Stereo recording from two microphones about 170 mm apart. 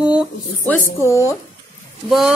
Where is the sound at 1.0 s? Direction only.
15° left (ahead or behind).